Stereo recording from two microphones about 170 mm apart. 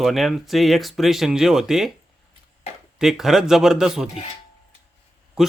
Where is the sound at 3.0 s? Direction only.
Centre (ahead or behind).